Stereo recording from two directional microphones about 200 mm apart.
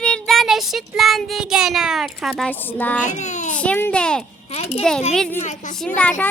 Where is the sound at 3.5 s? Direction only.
5° left (ahead or behind).